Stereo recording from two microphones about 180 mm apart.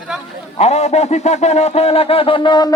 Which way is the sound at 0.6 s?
35° left (ahead or behind).